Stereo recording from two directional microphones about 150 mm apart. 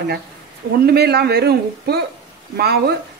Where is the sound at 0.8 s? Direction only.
90° right.